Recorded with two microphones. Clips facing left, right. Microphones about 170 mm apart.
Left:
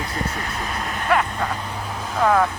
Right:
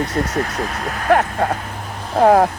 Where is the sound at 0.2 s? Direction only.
55° right (ahead or behind).